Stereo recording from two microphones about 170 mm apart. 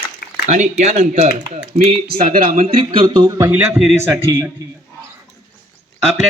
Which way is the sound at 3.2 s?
20° right (ahead or behind).